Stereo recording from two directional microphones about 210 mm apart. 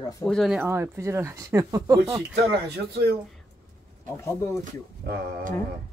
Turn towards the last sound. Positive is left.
turn(degrees=-50)  # may be behind; listen again after turning